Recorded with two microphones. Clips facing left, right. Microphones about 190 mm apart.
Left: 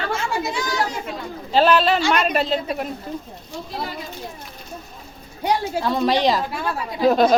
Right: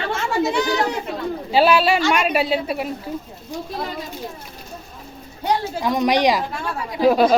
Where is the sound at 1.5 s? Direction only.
10° right (ahead or behind).